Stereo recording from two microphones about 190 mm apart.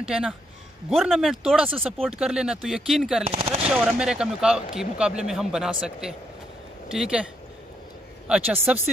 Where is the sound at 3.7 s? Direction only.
5° right (ahead or behind).